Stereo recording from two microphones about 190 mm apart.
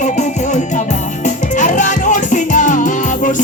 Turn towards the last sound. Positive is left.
turn(degrees=40)  # may be behind; listen again after turning